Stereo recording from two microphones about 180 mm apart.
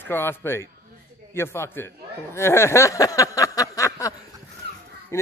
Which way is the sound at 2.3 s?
15° left (ahead or behind).